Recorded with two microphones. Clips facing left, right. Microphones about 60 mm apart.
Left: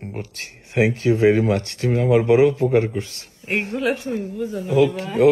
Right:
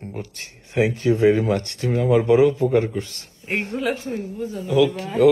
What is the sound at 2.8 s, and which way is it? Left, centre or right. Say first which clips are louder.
Speech: left 1 dB; left.